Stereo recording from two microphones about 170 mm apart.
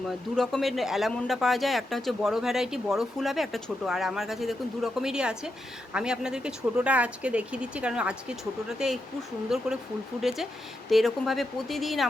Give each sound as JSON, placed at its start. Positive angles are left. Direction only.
{"t": 0.3, "sound": "speech", "side_deg": 0}